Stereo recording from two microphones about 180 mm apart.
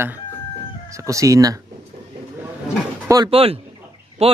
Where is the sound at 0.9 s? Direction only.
15° right (ahead or behind).